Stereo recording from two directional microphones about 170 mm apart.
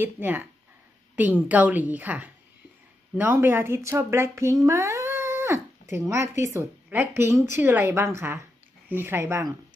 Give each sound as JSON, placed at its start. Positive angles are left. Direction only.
{"t": 0.0, "sound": "speech", "side_deg": -10}